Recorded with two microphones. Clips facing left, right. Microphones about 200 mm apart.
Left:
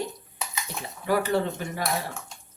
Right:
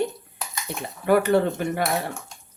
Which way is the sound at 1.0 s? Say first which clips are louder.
Right 6 dB; 60° right (ahead or behind).